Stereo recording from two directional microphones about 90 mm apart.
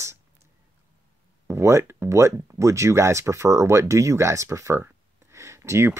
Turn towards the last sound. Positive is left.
turn(degrees=-30)  # may be behind; listen again after turning